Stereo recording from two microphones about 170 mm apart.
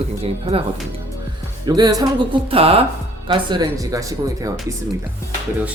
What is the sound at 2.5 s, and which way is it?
Speech, 35° right (ahead or behind).